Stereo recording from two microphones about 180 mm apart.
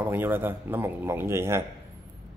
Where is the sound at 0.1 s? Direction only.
10° right (ahead or behind).